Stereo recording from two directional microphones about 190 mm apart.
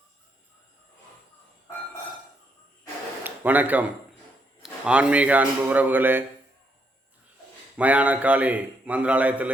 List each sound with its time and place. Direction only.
3.2 s a man's voice: 10° right (ahead or behind)
7.8 s a man's voice: 5° right (ahead or behind)